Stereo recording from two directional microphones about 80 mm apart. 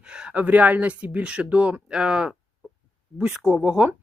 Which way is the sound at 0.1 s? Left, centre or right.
Centre.